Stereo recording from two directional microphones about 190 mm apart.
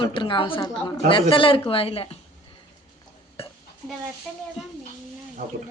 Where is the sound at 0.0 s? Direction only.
25° left (ahead or behind).